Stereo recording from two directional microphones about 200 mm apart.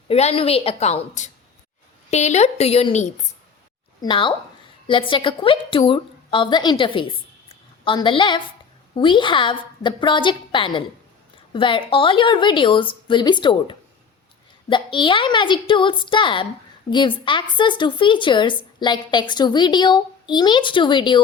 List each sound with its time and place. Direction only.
0.1 s a woman's voice: 30° left (ahead or behind)